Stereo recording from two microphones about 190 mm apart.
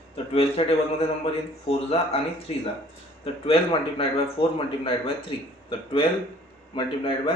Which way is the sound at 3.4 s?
30° left (ahead or behind).